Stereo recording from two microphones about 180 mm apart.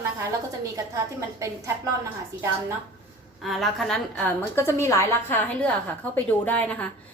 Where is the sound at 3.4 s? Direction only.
Centre (ahead or behind).